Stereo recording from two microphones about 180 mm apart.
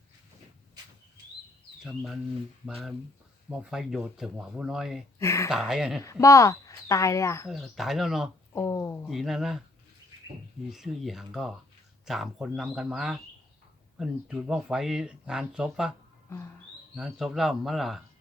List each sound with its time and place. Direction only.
1.8 s speech: 5° right (ahead or behind)
5.2 s speech: 15° left (ahead or behind)
5.5 s speech: 5° right (ahead or behind)
6.0 s speech: 15° left (ahead or behind)
7.4 s speech: centre (ahead or behind)
8.5 s speech: 15° left (ahead or behind)
9.0 s speech: centre (ahead or behind)
10.7 s speech: centre (ahead or behind)
16.9 s speech: 5° right (ahead or behind)